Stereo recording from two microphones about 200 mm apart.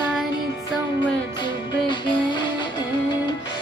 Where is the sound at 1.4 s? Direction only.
20° left (ahead or behind).